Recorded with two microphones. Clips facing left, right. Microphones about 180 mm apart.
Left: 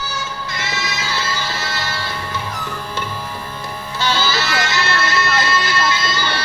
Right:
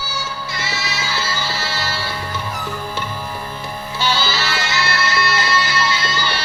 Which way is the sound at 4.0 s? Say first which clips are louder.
Left 1 dB; 10° right (ahead or behind).